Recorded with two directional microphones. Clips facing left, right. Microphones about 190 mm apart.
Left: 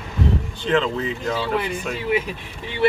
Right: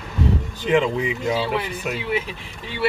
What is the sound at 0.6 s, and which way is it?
Speech, 10° right (ahead or behind).